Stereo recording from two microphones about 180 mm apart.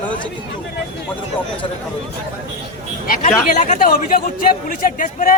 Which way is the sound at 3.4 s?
50° left (ahead or behind).